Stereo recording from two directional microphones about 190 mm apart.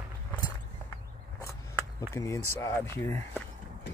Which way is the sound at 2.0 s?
15° left (ahead or behind).